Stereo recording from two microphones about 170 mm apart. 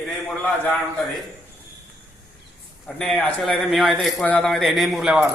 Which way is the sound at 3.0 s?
5° left (ahead or behind).